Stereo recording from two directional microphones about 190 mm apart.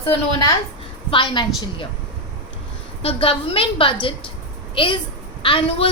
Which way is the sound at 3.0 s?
30° left (ahead or behind).